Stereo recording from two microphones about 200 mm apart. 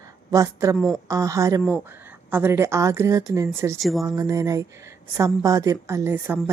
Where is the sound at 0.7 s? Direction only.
5° left (ahead or behind).